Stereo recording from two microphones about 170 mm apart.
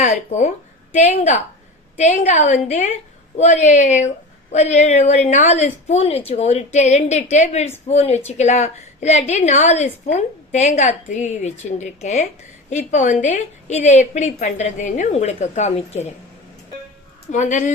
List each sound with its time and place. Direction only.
0.0 s a woman's voice: 45° left (ahead or behind)
17.3 s a woman's voice: 45° left (ahead or behind)